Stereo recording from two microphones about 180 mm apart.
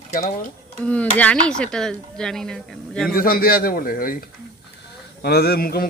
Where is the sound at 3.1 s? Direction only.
55° left (ahead or behind).